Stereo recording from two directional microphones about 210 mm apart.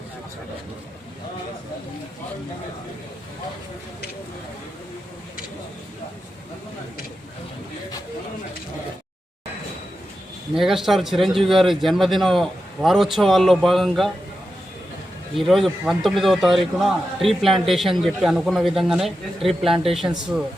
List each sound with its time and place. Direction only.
10.5 s a man's voice: centre (ahead or behind)
15.4 s a man's voice: centre (ahead or behind)